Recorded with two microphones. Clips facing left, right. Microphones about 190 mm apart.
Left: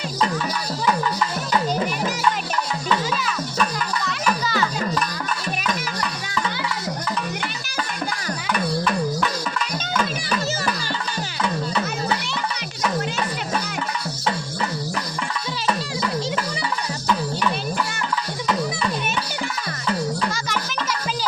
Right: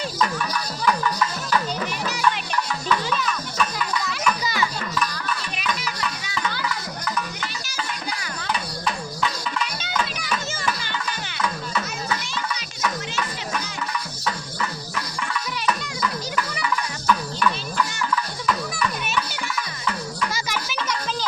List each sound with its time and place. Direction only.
5.6 s music: 45° left (ahead or behind)
8.5 s a sound: 50° left (ahead or behind)
9.9 s music: 40° left (ahead or behind)
14.3 s music: 30° left (ahead or behind)
16.3 s music: 25° left (ahead or behind)